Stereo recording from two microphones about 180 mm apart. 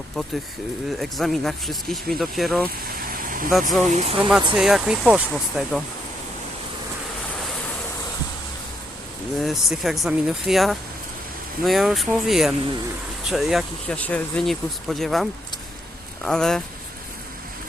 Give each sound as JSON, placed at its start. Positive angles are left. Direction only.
{"t": 0.9, "sound": "speech", "side_deg": 0}
{"t": 2.9, "sound": "vehicle", "side_deg": -55}
{"t": 3.5, "sound": "speech", "side_deg": 0}
{"t": 3.9, "sound": "speech", "side_deg": -35}
{"t": 4.5, "sound": "speech", "side_deg": -5}
{"t": 9.4, "sound": "speech", "side_deg": 0}